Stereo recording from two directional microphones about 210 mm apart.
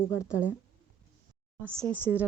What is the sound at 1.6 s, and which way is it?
Speech, 10° right (ahead or behind).